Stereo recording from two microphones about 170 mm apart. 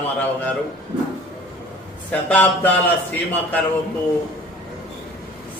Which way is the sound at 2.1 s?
10° left (ahead or behind).